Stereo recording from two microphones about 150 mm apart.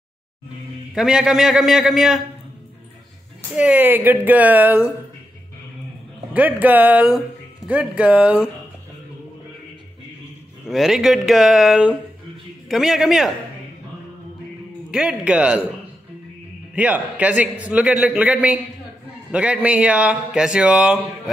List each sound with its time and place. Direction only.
0.9 s a man's voice: 5° right (ahead or behind)
3.5 s a man's voice: 10° right (ahead or behind)
6.3 s a man's voice: 10° right (ahead or behind)
10.7 s a man's voice: centre (ahead or behind)
14.9 s a man's voice: 5° right (ahead or behind)
16.7 s a man's voice: 10° right (ahead or behind)